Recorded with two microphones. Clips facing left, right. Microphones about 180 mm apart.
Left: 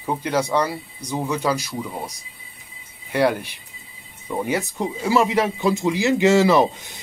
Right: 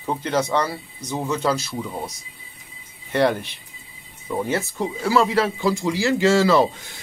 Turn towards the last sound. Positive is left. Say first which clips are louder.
# left 1 dB
turn(degrees=20)  # may be behind; listen again after turning